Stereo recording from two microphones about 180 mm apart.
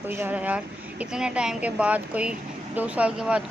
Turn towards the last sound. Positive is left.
turn(degrees=-5)  # may be behind; listen again after turning